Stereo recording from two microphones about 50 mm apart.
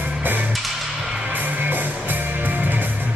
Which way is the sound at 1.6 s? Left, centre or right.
Right.